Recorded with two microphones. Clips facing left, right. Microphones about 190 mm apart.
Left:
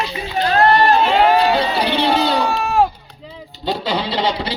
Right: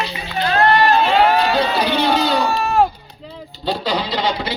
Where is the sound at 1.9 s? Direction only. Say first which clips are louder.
Left 1 dB; 30° left (ahead or behind).